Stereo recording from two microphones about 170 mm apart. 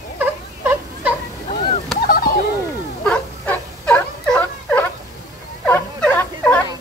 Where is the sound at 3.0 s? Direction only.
5° left (ahead or behind).